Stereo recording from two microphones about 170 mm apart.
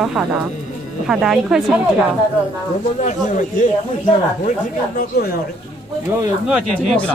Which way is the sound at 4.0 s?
50° left (ahead or behind).